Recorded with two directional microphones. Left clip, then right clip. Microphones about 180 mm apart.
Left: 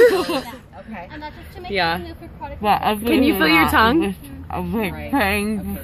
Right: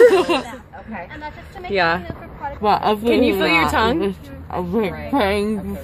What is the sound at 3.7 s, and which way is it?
Speech, 40° left (ahead or behind).